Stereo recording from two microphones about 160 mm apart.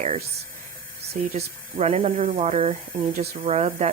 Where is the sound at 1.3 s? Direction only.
45° right (ahead or behind).